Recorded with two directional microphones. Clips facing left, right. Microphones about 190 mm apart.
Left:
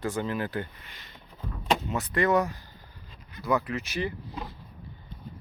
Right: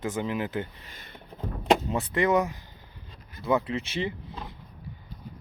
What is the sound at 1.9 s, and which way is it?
Speech, 30° right (ahead or behind).